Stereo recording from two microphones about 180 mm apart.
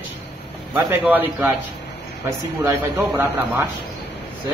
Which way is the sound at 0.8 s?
10° right (ahead or behind).